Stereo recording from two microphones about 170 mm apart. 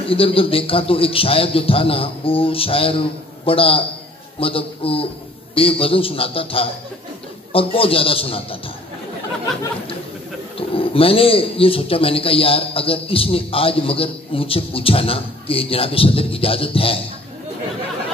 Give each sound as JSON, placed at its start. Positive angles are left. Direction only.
{"t": 0.0, "sound": "a man's voice", "side_deg": 35}
{"t": 10.7, "sound": "a man's voice", "side_deg": 35}